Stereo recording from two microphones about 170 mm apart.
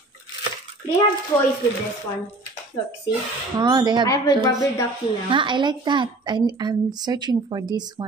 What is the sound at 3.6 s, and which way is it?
Speech, 25° right (ahead or behind).